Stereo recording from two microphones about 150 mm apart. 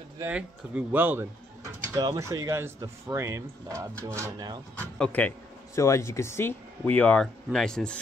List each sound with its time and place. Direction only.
0.3 s speech: 10° right (ahead or behind)
2.0 s speech: 25° right (ahead or behind)
4.7 s speech: 10° left (ahead or behind)
5.8 s speech: 20° left (ahead or behind)